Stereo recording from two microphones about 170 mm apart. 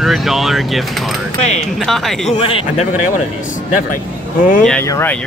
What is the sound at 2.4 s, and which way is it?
Speech, 35° left (ahead or behind).